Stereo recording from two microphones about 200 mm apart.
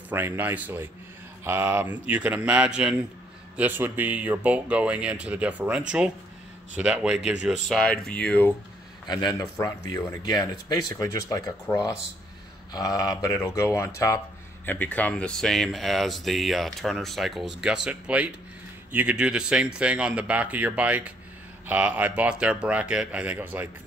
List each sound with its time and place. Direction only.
0.1 s speech: 10° right (ahead or behind); by 8.5 s 10° left (ahead or behind)
9.0 s a man's voice: 20° left (ahead or behind); by 23.7 s 10° right (ahead or behind)